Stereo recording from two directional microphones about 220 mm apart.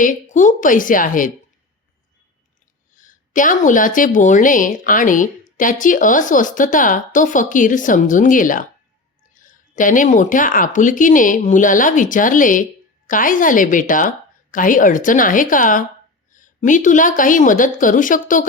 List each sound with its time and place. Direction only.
0.0 s a woman's voice: 35° left (ahead or behind)
2.9 s a woman's voice: 35° left (ahead or behind)